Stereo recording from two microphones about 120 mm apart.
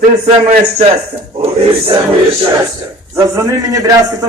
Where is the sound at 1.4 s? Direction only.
50° right (ahead or behind).